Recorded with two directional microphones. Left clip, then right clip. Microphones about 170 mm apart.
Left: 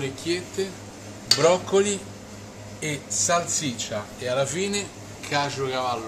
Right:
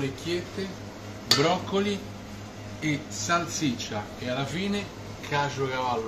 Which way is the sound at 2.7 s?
65° left (ahead or behind).